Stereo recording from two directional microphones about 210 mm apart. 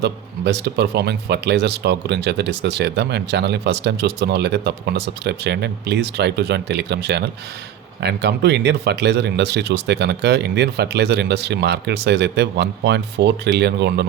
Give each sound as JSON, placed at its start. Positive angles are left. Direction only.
{"t": 0.0, "sound": "speech", "side_deg": -55}